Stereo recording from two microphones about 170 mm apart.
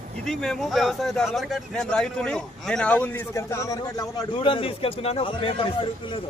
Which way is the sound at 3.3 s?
20° left (ahead or behind).